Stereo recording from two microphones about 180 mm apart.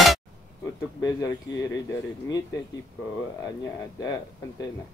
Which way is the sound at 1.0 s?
20° left (ahead or behind).